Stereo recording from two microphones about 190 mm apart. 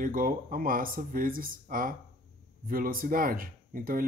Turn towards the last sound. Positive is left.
turn(degrees=-50)  # may be behind; listen again after turning